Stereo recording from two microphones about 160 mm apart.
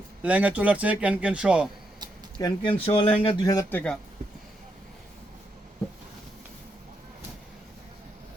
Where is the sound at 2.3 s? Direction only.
30° left (ahead or behind).